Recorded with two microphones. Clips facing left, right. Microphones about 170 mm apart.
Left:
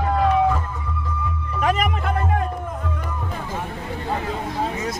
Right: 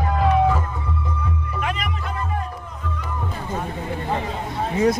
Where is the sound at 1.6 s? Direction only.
45° left (ahead or behind).